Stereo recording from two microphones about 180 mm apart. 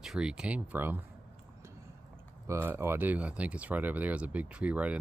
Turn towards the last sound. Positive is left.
turn(degrees=-5)  # may be behind; listen again after turning